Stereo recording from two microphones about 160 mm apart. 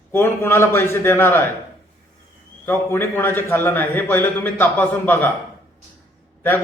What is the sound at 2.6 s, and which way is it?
A man's voice, 15° left (ahead or behind).